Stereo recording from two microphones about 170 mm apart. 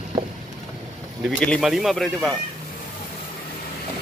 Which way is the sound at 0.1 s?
25° right (ahead or behind).